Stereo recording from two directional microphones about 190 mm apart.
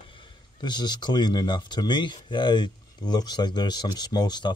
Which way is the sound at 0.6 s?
25° left (ahead or behind).